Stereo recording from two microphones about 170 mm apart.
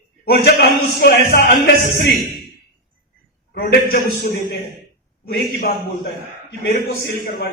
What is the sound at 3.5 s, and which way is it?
Speech, 60° left (ahead or behind).